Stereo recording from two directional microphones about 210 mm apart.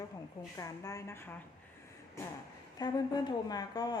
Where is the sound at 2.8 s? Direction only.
20° left (ahead or behind).